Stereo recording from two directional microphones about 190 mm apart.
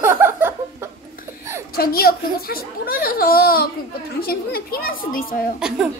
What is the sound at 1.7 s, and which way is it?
A child's voice, 55° left (ahead or behind).